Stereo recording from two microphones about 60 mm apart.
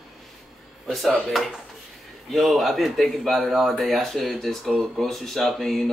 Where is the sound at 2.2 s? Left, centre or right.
Centre.